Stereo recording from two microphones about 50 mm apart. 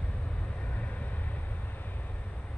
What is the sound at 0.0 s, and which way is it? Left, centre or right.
Vehicle, left.